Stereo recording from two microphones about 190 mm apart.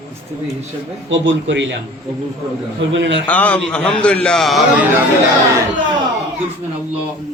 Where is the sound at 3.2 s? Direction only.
10° left (ahead or behind).